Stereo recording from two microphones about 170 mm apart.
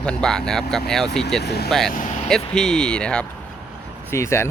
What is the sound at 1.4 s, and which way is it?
Speech, 75° left (ahead or behind).